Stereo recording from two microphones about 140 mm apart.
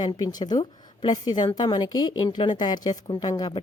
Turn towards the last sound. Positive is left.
turn(degrees=30)  # may be behind; listen again after turning